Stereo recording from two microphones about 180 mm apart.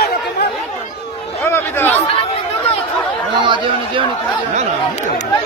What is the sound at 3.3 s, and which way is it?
Speech, 25° right (ahead or behind).